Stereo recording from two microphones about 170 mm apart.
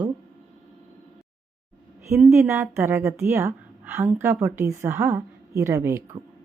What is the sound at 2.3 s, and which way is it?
A woman's voice, 15° right (ahead or behind).